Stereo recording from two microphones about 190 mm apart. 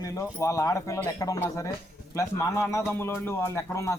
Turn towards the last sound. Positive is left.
turn(degrees=15)  # may be behind; listen again after turning